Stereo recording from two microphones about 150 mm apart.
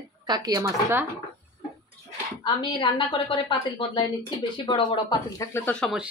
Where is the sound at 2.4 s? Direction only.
30° left (ahead or behind).